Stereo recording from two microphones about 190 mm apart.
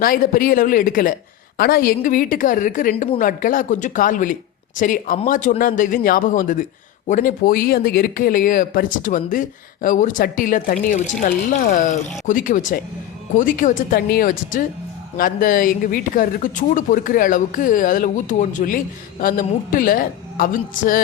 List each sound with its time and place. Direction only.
0.0 s speech: 50° left (ahead or behind)